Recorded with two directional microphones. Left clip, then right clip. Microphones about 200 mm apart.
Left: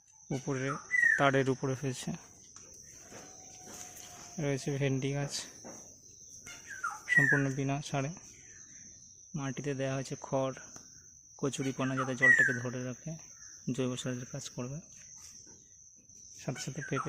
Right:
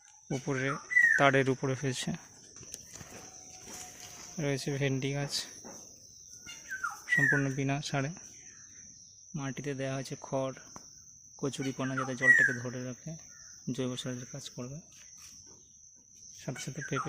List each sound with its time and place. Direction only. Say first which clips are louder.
0.3 s speech: right 2 dB; 5° right (ahead or behind)
4.4 s speech: right 1 dB; centre (ahead or behind)
7.1 s speech: left 1 dB; centre (ahead or behind)
9.3 s speech: left 1 dB; centre (ahead or behind)
16.4 s speech: even; 5° left (ahead or behind)